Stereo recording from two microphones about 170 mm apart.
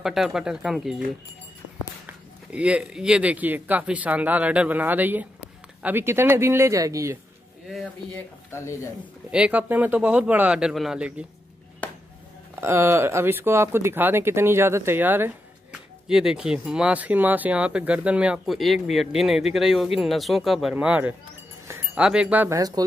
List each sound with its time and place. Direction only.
0.0 s speech: centre (ahead or behind)
2.0 s speech: 5° right (ahead or behind)
8.5 s speech: 15° left (ahead or behind)
9.3 s speech: 5° right (ahead or behind)
11.8 s a sound: 10° left (ahead or behind)
12.5 s speech: 15° right (ahead or behind)
22.6 s speech: 20° right (ahead or behind)